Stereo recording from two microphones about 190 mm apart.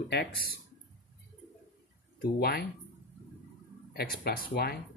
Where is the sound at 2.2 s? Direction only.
55° left (ahead or behind).